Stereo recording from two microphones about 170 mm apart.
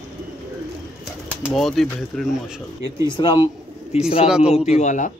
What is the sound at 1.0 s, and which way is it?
Bird, centre (ahead or behind).